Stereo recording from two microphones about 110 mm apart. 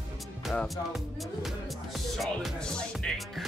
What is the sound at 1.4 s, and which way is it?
Speech, centre (ahead or behind).